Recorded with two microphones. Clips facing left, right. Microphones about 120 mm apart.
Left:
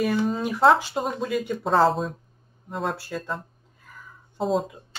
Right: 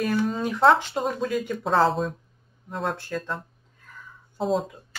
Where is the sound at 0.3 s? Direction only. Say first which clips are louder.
Even; 5° left (ahead or behind).